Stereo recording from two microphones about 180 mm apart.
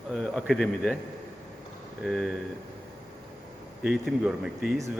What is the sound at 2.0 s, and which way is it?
Speech, centre (ahead or behind).